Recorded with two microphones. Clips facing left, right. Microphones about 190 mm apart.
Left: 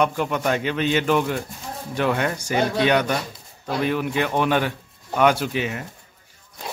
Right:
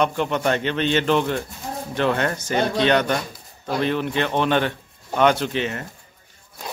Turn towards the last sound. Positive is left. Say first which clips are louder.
# right 1 dB
turn(degrees=10)  # may be behind; listen again after turning